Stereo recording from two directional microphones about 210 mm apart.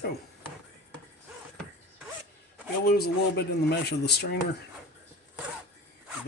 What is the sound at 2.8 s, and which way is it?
A man's voice, 50° left (ahead or behind).